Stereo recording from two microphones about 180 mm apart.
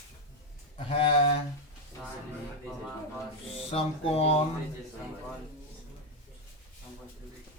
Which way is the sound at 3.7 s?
35° left (ahead or behind).